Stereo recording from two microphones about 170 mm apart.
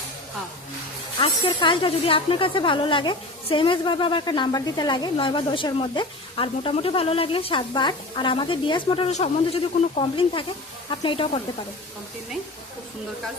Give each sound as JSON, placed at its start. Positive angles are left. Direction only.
{"t": 1.2, "sound": "speech", "side_deg": 30}